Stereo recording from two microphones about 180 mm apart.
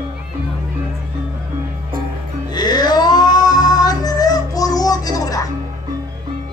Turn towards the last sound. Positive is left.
turn(degrees=20)  # may be behind; listen again after turning